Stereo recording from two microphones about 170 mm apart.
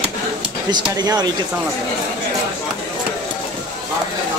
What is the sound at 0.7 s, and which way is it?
Speech, 25° right (ahead or behind).